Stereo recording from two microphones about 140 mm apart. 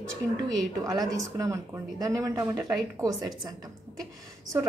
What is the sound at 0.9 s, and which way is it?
Speech, 25° right (ahead or behind).